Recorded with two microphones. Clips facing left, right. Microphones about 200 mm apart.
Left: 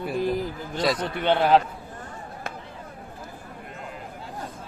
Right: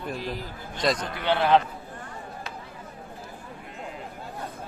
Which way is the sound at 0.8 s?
5° left (ahead or behind).